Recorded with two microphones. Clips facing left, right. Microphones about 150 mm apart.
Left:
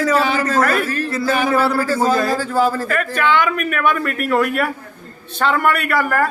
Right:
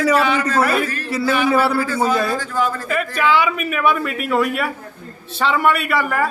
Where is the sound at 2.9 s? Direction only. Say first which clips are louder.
Even; 5° right (ahead or behind).